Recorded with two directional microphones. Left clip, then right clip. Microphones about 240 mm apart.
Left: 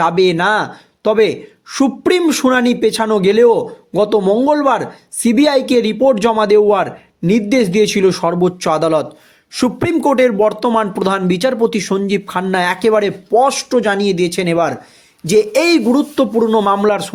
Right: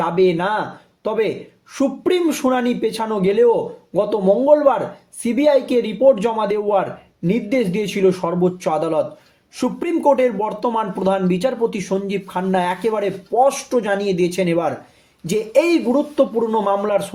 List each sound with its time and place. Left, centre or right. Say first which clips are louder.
0.0 s speech: left 5 dB; left